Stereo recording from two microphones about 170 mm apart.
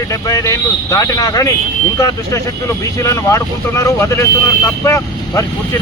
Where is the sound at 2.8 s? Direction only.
20° left (ahead or behind).